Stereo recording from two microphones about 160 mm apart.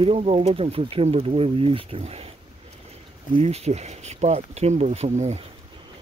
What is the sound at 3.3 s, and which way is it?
Speech, 40° right (ahead or behind).